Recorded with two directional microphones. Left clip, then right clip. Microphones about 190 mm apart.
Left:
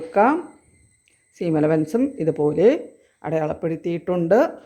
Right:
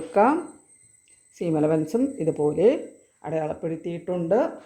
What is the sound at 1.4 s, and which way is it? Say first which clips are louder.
Speech: left 3 dB; 10° left (ahead or behind).